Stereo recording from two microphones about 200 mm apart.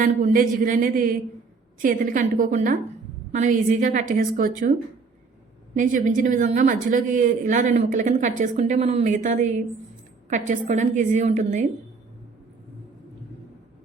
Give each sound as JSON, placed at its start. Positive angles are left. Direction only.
{"t": 0.0, "sound": "a man's voice", "side_deg": -40}
{"t": 5.7, "sound": "speech", "side_deg": -40}